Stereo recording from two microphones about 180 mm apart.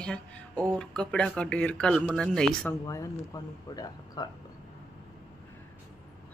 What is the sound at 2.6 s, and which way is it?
Speech, 20° left (ahead or behind).